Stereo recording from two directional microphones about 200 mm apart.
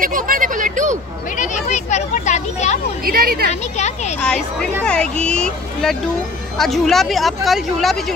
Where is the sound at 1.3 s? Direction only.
40° left (ahead or behind).